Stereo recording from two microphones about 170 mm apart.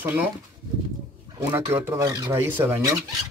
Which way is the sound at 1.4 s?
10° right (ahead or behind).